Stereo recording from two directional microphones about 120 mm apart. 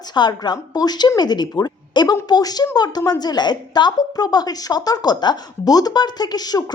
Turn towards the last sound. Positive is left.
turn(degrees=35)  # may be behind; listen again after turning